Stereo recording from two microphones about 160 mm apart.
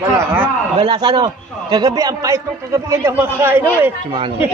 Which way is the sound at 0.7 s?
30° right (ahead or behind).